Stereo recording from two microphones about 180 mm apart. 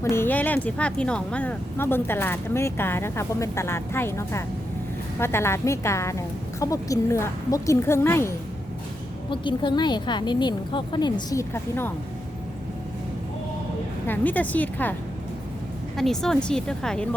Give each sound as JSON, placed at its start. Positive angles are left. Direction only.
{"t": 0.0, "sound": "speech", "side_deg": 15}
{"t": 9.3, "sound": "speech", "side_deg": 25}
{"t": 14.1, "sound": "speech", "side_deg": 10}
{"t": 16.0, "sound": "speech", "side_deg": 0}